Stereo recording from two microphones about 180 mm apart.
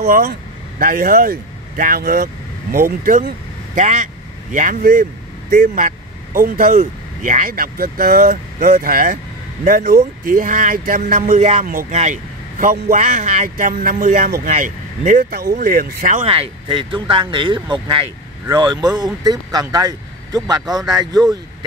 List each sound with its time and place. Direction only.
0.0 s speech: 55° right (ahead or behind)
3.7 s speech: 45° right (ahead or behind)
11.6 s a man's voice: 50° right (ahead or behind)
13.0 s speech: 45° right (ahead or behind); by 21.2 s 20° right (ahead or behind)